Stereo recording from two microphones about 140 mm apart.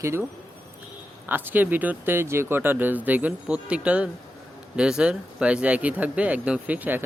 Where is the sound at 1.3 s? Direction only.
15° right (ahead or behind).